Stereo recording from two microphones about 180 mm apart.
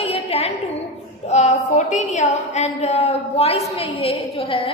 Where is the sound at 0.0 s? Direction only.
35° left (ahead or behind).